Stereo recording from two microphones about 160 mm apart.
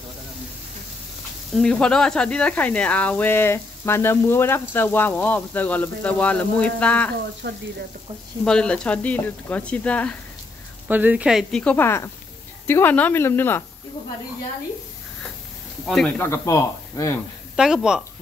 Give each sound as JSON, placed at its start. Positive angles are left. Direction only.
{"t": 1.5, "sound": "speech", "side_deg": 5}
{"t": 7.4, "sound": "frying", "side_deg": -90}
{"t": 8.5, "sound": "speech", "side_deg": 5}
{"t": 10.9, "sound": "speech", "side_deg": -10}
{"t": 11.6, "sound": "speech", "side_deg": 15}
{"t": 16.2, "sound": "speech", "side_deg": 15}
{"t": 17.6, "sound": "a woman's voice", "side_deg": -5}